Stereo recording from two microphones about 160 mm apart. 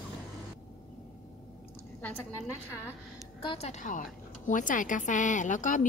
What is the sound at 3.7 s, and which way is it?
A woman's voice, 50° left (ahead or behind).